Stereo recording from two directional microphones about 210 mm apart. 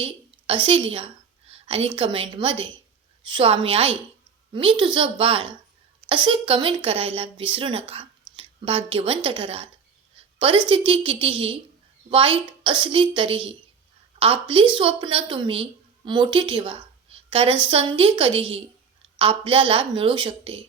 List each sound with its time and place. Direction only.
0.0 s a woman's voice: 25° right (ahead or behind)